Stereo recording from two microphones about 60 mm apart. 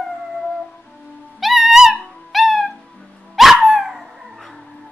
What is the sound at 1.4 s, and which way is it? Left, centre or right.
Music, centre.